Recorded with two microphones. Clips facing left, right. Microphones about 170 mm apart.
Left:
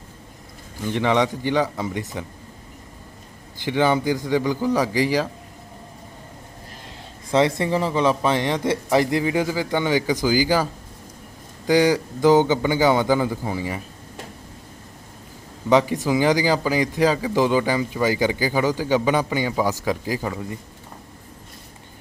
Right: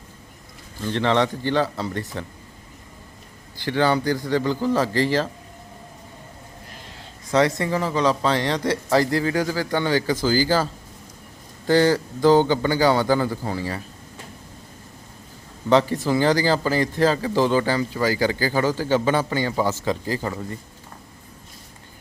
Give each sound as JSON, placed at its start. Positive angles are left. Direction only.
{"t": 0.8, "sound": "a man's voice", "side_deg": 15}
{"t": 3.6, "sound": "a man's voice", "side_deg": 15}
{"t": 7.3, "sound": "a man's voice", "side_deg": 25}
{"t": 15.7, "sound": "a man's voice", "side_deg": 15}